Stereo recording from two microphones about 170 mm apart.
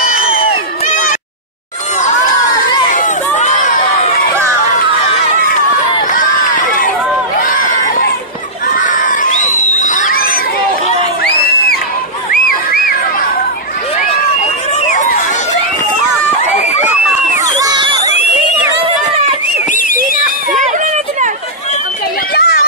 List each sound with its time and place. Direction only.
0.0 s crowd: 60° left (ahead or behind)
2.9 s crowd: 50° left (ahead or behind)
7.3 s a sound: 55° left (ahead or behind)
8.7 s crowd: 50° left (ahead or behind)
17.6 s screaming: 25° right (ahead or behind)
22.3 s children playing: 65° left (ahead or behind)